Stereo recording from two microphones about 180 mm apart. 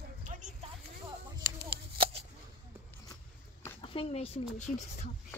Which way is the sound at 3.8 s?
30° left (ahead or behind).